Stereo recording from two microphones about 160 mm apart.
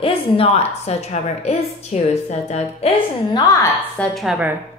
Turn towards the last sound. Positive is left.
turn(degrees=-5)  # may be behind; listen again after turning